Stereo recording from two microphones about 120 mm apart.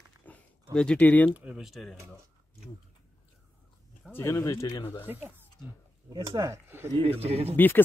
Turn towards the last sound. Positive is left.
turn(degrees=15)  # may be behind; listen again after turning